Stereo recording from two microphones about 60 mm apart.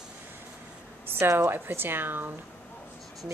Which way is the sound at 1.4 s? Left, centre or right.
Right.